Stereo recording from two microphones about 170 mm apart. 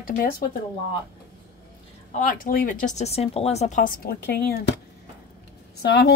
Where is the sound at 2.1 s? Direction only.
50° left (ahead or behind); by 4.7 s 65° left (ahead or behind).